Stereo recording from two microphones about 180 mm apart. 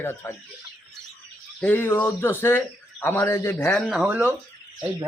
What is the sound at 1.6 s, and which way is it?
A man's voice, 10° left (ahead or behind).